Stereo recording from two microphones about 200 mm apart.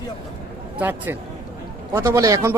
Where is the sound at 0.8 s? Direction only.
10° right (ahead or behind).